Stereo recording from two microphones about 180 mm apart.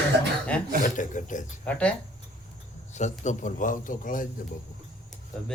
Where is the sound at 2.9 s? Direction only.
40° left (ahead or behind).